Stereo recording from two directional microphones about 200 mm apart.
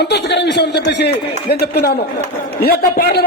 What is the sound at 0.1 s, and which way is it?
A man's voice, 60° left (ahead or behind).